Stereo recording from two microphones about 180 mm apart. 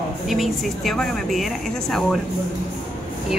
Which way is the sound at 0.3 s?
Centre (ahead or behind).